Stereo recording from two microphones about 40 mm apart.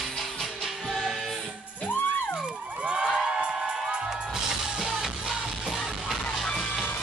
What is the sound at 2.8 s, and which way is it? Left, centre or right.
Music, right.